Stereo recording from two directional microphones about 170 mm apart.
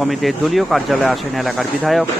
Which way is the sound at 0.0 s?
Centre (ahead or behind).